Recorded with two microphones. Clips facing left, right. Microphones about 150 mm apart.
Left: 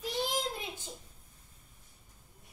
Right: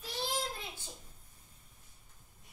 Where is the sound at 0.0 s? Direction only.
20° left (ahead or behind).